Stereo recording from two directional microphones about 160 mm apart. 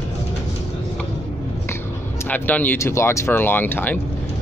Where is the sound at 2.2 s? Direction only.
10° left (ahead or behind).